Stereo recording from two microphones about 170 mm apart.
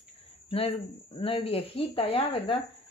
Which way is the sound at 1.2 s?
35° left (ahead or behind).